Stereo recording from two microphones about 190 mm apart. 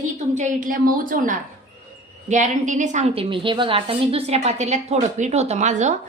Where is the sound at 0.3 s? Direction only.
45° right (ahead or behind).